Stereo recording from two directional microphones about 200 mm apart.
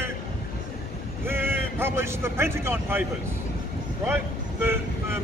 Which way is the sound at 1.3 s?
10° right (ahead or behind).